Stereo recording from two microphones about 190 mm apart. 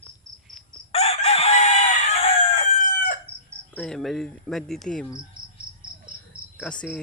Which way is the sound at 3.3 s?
35° right (ahead or behind).